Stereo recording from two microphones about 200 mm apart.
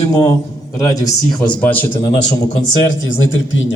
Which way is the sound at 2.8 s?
70° left (ahead or behind).